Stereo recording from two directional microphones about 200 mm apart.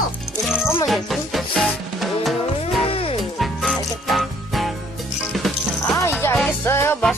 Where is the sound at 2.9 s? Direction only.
30° left (ahead or behind).